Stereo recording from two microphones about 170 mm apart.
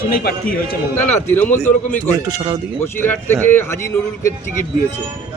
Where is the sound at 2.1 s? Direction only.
20° right (ahead or behind).